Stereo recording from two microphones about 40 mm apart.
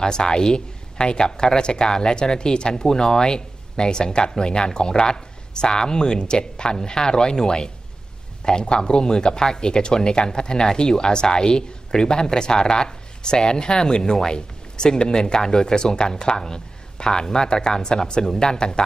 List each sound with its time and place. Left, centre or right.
0.0 s speech: centre